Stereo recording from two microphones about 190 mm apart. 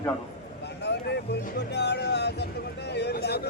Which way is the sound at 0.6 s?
60° left (ahead or behind).